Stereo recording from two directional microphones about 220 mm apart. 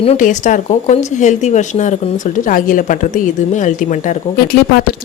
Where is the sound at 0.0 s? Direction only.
30° left (ahead or behind).